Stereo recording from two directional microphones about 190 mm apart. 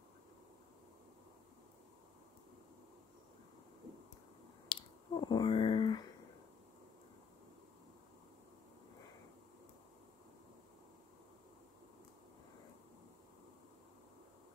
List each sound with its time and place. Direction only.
4.6 s finger snapping: 20° left (ahead or behind)